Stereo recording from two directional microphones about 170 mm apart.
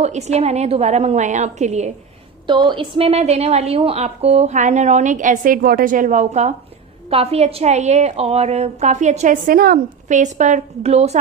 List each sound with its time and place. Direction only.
0.0 s a woman's voice: 40° right (ahead or behind)
2.4 s a woman's voice: 25° right (ahead or behind)